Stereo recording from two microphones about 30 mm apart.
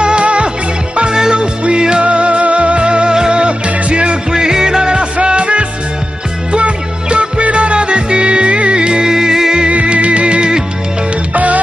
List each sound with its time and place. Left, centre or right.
0.0 s music: right
2.0 s music: right
4.3 s music: centre
5.2 s music: right
8.7 s music: right
9.1 s music: centre
9.7 s music: right
11.3 s music: right